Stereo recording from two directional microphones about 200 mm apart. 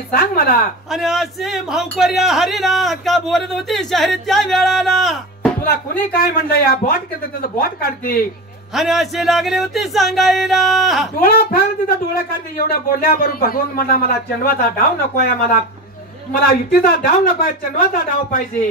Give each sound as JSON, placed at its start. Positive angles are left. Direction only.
{"t": 0.1, "sound": "speech", "side_deg": 50}
{"t": 0.8, "sound": "speech", "side_deg": 0}
{"t": 5.7, "sound": "speech", "side_deg": 50}
{"t": 8.7, "sound": "speech", "side_deg": 0}
{"t": 11.1, "sound": "speech", "side_deg": 45}